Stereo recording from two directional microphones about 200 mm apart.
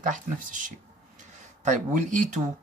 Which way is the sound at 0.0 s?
40° right (ahead or behind).